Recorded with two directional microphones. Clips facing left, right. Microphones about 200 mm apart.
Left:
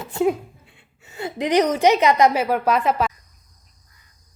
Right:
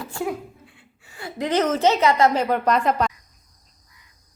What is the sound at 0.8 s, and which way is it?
A woman's voice, 20° left (ahead or behind).